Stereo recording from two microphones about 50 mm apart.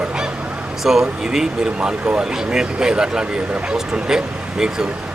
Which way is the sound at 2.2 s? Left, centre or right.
Centre.